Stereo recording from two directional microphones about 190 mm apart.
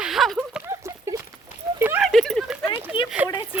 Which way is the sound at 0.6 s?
15° right (ahead or behind).